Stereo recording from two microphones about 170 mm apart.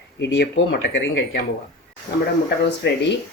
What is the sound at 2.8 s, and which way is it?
Speech, 90° left.